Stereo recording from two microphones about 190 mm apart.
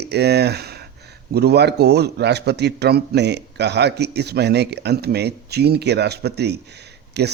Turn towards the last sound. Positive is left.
turn(degrees=-60)  # may be behind; listen again after turning